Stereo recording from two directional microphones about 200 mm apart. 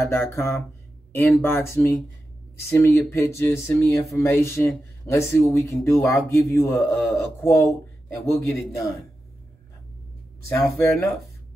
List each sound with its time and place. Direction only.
0.1 s speech: 10° left (ahead or behind)
10.5 s speech: 10° left (ahead or behind)